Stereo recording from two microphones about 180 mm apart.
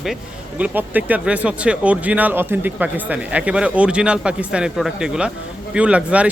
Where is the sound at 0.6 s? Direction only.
10° right (ahead or behind).